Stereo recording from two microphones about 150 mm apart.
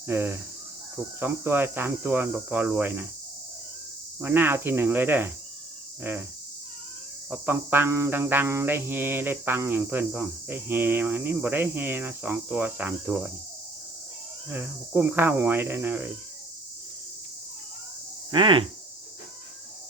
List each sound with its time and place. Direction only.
0.1 s cricket: 15° right (ahead or behind)
4.2 s cricket: 15° right (ahead or behind)
7.3 s cricket: 15° right (ahead or behind)
14.5 s cricket: 15° right (ahead or behind)
18.3 s speech: 30° right (ahead or behind)